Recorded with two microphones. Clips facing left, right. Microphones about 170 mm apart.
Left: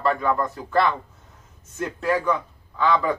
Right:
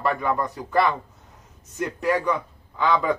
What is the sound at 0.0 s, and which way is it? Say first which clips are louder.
Speech: left 2 dB; 15° right (ahead or behind).